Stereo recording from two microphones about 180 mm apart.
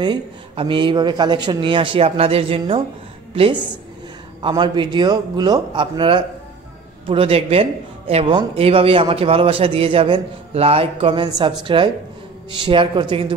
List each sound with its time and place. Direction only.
0.0 s speech: 25° right (ahead or behind)
4.4 s speech: 25° right (ahead or behind)